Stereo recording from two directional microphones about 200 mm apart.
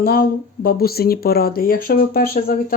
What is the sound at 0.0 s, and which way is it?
Speech, 50° left (ahead or behind).